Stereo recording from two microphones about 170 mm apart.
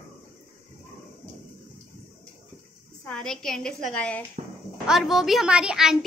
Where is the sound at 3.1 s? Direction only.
5° left (ahead or behind).